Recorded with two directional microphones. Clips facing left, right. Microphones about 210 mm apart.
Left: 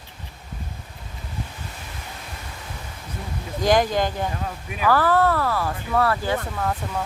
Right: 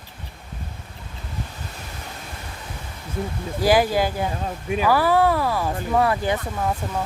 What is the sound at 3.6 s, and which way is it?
Speech, 5° right (ahead or behind).